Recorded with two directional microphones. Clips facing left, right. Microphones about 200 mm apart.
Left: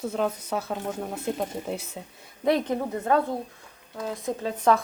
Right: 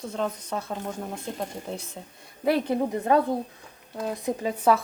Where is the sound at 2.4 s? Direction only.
5° right (ahead or behind).